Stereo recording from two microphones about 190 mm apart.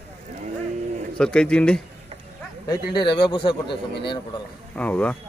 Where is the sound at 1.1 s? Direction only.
5° left (ahead or behind).